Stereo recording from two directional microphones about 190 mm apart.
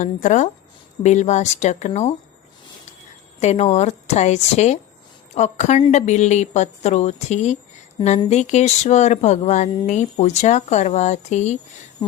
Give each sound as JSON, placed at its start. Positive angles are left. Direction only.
{"t": 0.0, "sound": "speech", "side_deg": 40}
{"t": 3.4, "sound": "speech", "side_deg": 35}